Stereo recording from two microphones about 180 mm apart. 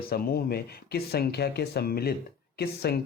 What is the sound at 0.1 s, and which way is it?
Speech, 55° left (ahead or behind).